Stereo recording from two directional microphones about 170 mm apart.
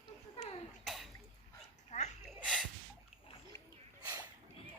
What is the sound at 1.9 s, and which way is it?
Sneeze, 40° left (ahead or behind).